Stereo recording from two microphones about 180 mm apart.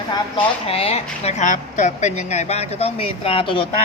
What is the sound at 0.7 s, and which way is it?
A woman's voice, 35° left (ahead or behind).